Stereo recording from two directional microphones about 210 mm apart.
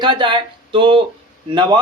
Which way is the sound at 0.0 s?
25° right (ahead or behind).